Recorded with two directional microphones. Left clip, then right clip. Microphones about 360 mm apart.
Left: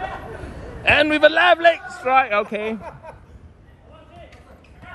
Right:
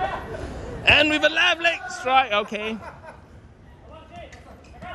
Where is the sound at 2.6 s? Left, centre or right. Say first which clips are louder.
Left 3 dB; left.